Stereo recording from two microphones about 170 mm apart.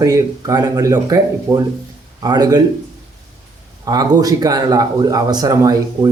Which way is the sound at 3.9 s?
20° right (ahead or behind).